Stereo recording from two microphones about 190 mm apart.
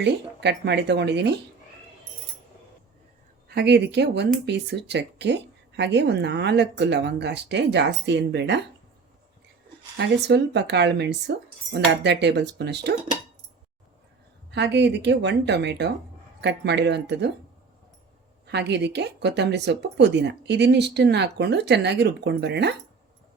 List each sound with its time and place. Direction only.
0.0 s speech: 65° right (ahead or behind)
3.5 s speech: 60° right (ahead or behind)
10.2 s speech: 65° right (ahead or behind)
14.5 s speech: 65° right (ahead or behind)
18.4 s speech: 65° right (ahead or behind)